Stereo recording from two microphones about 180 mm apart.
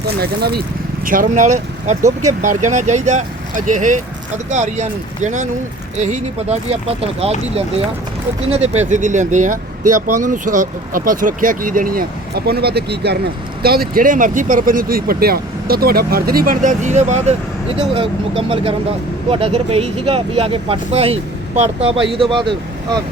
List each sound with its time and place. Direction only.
0.2 s speech: 60° right (ahead or behind)
1.0 s speech: 50° right (ahead or behind); by 7.3 s 35° right (ahead or behind)
8.4 s speech: 35° right (ahead or behind)